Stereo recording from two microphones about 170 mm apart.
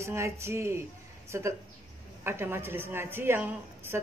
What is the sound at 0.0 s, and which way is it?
A woman's voice, 15° right (ahead or behind).